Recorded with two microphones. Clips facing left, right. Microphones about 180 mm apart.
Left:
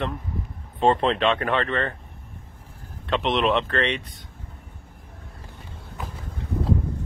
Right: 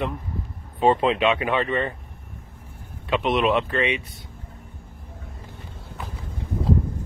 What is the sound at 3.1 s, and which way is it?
Speech, 5° right (ahead or behind).